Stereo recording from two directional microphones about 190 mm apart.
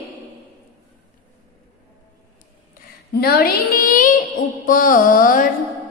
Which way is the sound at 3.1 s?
55° left (ahead or behind).